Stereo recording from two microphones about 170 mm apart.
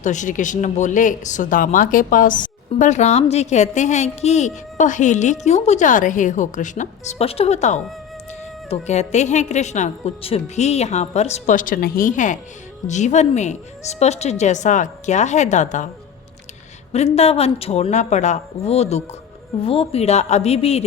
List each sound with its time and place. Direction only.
0.0 s speech: 45° left (ahead or behind)
16.9 s a woman's voice: 40° left (ahead or behind)